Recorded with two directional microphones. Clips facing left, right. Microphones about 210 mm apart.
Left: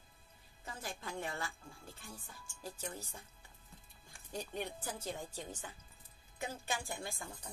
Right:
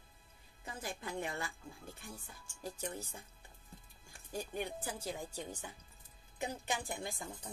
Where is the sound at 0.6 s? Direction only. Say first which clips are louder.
Right 2 dB; 20° right (ahead or behind).